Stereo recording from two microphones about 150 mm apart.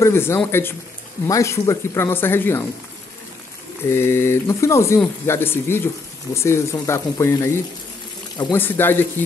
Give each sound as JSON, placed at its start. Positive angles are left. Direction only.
{"t": 0.0, "sound": "speech", "side_deg": 15}
{"t": 3.9, "sound": "speech", "side_deg": 15}
{"t": 8.5, "sound": "speech", "side_deg": 15}